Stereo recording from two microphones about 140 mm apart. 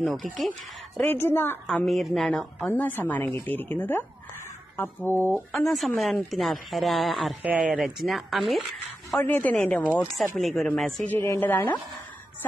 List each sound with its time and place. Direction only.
0.0 s speech: centre (ahead or behind)
1.0 s speech: 15° left (ahead or behind)
1.7 s speech: 5° left (ahead or behind)
2.7 s speech: 15° left (ahead or behind)
5.5 s speech: 5° left (ahead or behind)
9.2 s speech: 10° left (ahead or behind)
11.1 s speech: 15° left (ahead or behind)